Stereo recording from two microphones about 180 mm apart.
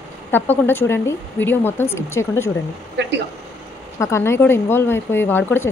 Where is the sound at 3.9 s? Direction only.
15° left (ahead or behind).